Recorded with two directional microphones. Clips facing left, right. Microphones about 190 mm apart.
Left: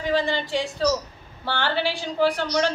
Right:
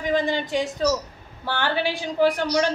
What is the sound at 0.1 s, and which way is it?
A man's voice, 20° right (ahead or behind).